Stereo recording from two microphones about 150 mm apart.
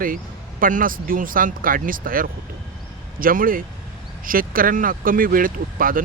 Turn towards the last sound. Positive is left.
turn(degrees=-70)  # may be behind; listen again after turning